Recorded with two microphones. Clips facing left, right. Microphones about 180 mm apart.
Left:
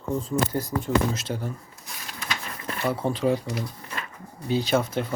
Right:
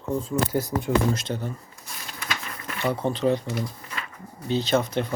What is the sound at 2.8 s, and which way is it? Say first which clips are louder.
Speech: right 1 dB; 5° left (ahead or behind).